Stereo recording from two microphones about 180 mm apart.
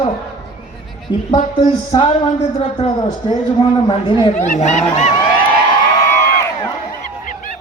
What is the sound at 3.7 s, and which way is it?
Speech, 25° left (ahead or behind).